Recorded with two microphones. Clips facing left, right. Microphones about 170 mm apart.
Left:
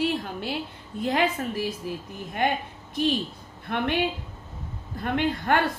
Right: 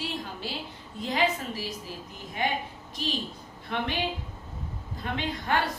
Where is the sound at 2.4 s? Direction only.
55° left (ahead or behind).